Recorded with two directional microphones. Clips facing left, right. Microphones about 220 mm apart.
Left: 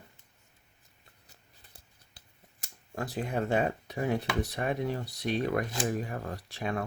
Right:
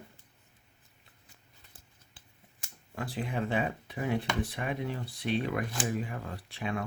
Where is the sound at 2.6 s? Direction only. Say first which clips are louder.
Left 2 dB; 45° left (ahead or behind).